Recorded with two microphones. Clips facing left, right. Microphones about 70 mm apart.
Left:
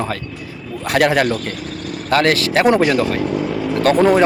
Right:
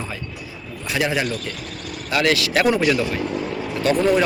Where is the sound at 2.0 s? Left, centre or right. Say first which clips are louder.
Left 4 dB; left.